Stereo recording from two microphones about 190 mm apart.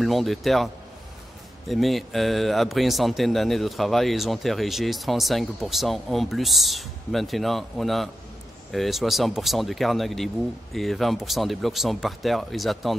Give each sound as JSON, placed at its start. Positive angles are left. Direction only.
{"t": 0.0, "sound": "speech", "side_deg": 0}
{"t": 1.7, "sound": "speech", "side_deg": 0}